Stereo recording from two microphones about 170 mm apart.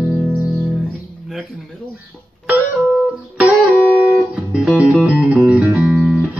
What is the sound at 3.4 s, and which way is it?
Music, 10° right (ahead or behind).